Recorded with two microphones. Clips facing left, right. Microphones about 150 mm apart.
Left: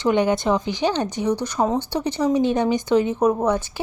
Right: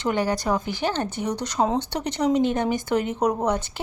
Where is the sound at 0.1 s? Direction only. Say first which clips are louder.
Left 5 dB; 20° left (ahead or behind).